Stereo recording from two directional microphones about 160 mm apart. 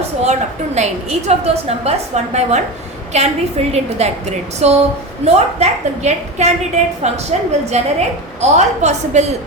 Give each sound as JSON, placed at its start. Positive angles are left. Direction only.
{"t": 0.2, "sound": "a woman's voice", "side_deg": -45}